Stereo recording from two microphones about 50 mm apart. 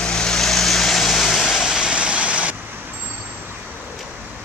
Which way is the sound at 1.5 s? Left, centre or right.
Centre.